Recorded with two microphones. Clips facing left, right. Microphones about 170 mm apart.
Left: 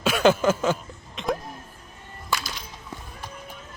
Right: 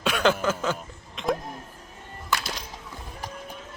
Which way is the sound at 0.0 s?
5° left (ahead or behind).